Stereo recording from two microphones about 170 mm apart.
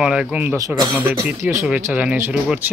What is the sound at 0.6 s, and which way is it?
Speech, 25° right (ahead or behind).